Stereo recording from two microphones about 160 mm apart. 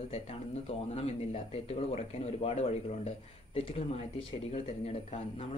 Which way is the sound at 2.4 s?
40° left (ahead or behind).